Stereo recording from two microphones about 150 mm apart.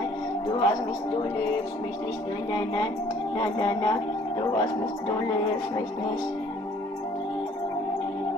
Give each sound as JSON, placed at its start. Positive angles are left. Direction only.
{"t": 0.5, "sound": "speech", "side_deg": 30}
{"t": 2.5, "sound": "speech", "side_deg": 30}